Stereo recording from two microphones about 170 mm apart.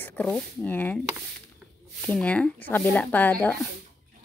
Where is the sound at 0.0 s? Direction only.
10° left (ahead or behind).